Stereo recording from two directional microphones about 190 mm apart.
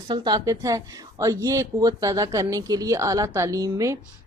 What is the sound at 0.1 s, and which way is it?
A woman's voice, 25° right (ahead or behind).